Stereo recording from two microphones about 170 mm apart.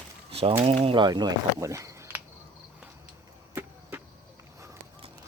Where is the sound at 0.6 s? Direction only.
35° right (ahead or behind); by 2.2 s 15° right (ahead or behind).